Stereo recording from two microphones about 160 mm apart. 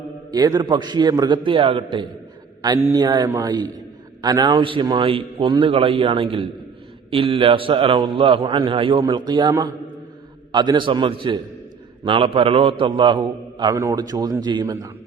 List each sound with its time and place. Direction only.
0.3 s a man's voice: 25° right (ahead or behind)
2.8 s a man's voice: 20° right (ahead or behind)